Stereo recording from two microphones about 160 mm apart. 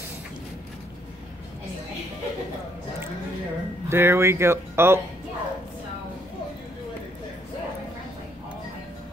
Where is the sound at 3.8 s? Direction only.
15° right (ahead or behind).